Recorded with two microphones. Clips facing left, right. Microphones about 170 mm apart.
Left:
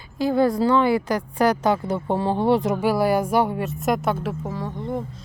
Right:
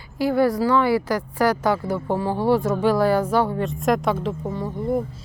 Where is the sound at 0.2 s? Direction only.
20° left (ahead or behind).